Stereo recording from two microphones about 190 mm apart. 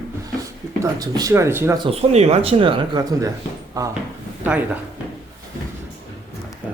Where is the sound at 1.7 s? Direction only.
30° right (ahead or behind).